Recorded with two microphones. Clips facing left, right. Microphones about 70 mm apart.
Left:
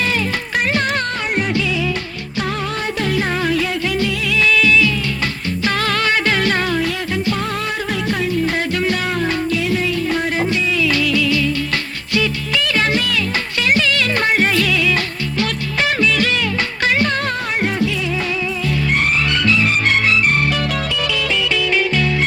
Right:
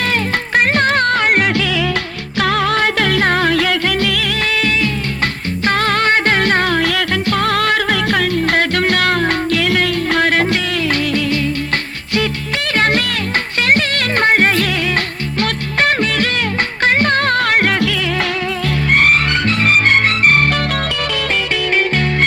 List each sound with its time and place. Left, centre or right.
0.0 s music: right
10.8 s music: right
18.9 s music: right